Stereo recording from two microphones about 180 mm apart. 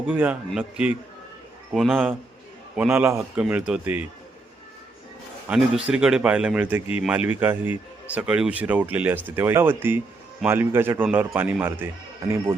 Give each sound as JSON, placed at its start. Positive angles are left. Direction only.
{"t": 0.1, "sound": "speech", "side_deg": -10}
{"t": 5.5, "sound": "speech", "side_deg": -5}